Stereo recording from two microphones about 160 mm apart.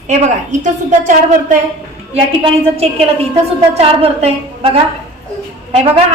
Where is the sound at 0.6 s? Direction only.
50° right (ahead or behind).